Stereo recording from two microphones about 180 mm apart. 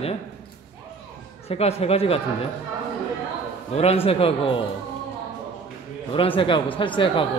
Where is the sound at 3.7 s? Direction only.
35° left (ahead or behind).